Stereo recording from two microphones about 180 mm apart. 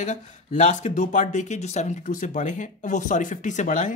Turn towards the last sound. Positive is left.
turn(degrees=45)  # may be behind; listen again after turning